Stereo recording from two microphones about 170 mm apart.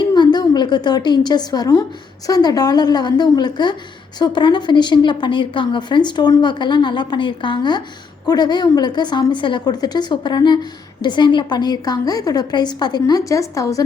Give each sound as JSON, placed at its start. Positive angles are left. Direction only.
{"t": 0.0, "sound": "a woman's voice", "side_deg": 25}